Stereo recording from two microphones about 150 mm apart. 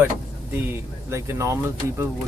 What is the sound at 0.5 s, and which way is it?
Speech, 15° right (ahead or behind).